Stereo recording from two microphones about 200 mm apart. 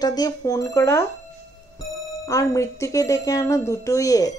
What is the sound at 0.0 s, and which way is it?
A woman's voice, 20° left (ahead or behind).